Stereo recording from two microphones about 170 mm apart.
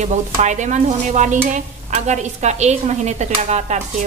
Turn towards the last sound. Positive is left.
turn(degrees=-40)  # may be behind; listen again after turning